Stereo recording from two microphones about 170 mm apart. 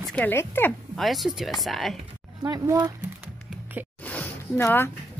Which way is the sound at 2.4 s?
20° right (ahead or behind).